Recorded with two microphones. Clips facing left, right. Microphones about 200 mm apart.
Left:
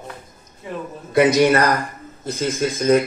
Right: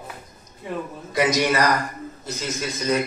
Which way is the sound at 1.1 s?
55° left (ahead or behind).